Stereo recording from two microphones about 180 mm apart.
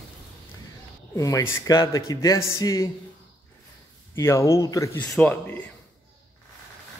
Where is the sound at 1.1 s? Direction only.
20° left (ahead or behind).